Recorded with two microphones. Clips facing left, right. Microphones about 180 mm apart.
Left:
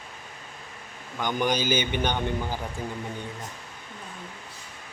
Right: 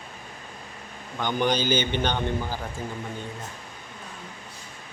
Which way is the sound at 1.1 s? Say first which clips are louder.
Right 1 dB; 10° left (ahead or behind).